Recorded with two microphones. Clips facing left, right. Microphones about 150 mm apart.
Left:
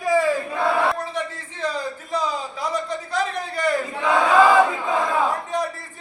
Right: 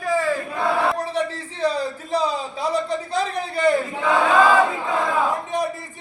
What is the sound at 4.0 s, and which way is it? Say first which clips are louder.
Chant: left 1 dB; 15° left (ahead or behind).